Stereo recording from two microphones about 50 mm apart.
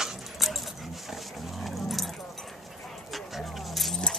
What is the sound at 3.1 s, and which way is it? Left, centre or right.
Dog, centre.